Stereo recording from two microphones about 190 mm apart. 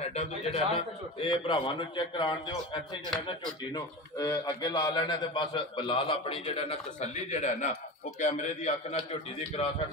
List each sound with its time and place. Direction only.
0.0 s a man's voice: 35° left (ahead or behind)